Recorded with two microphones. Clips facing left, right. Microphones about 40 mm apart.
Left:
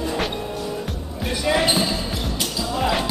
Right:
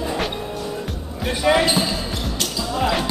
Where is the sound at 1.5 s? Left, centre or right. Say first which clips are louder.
Right 4 dB; centre.